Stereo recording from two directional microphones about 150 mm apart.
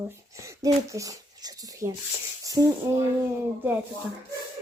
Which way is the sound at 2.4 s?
25° right (ahead or behind).